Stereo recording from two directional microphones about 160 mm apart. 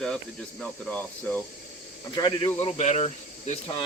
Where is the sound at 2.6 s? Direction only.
45° left (ahead or behind).